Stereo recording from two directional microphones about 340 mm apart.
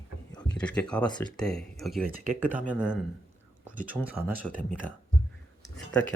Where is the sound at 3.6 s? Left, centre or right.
Right.